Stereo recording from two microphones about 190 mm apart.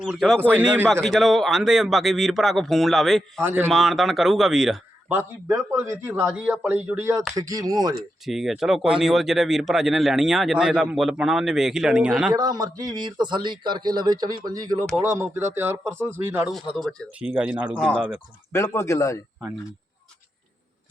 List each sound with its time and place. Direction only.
0.0 s speech: centre (ahead or behind)
0.5 s a man's voice: 10° right (ahead or behind)
1.0 s speech: centre (ahead or behind)
3.4 s a man's voice: 10° right (ahead or behind)
3.7 s a man's voice: centre (ahead or behind); by 7.9 s 20° right (ahead or behind)
8.2 s speech: centre (ahead or behind)
12.3 s a man's voice: 20° right (ahead or behind)
16.6 s speech: centre (ahead or behind)
18.5 s speech: 15° left (ahead or behind)